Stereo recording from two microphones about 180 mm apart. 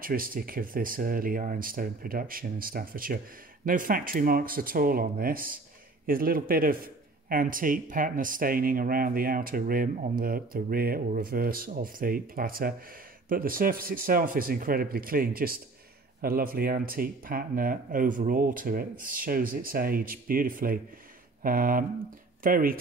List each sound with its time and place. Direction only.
0.0 s a man's voice: 50° right (ahead or behind)